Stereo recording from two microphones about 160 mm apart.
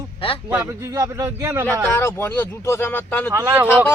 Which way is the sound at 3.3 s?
15° right (ahead or behind).